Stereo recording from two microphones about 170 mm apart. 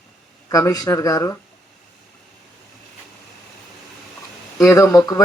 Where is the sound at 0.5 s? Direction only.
20° left (ahead or behind).